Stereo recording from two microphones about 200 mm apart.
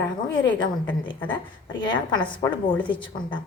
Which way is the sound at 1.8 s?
25° left (ahead or behind).